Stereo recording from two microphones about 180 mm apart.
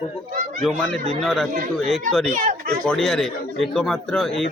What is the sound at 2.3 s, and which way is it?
Speech, 45° right (ahead or behind).